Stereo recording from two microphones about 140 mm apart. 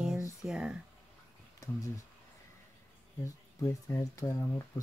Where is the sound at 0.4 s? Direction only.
5° right (ahead or behind).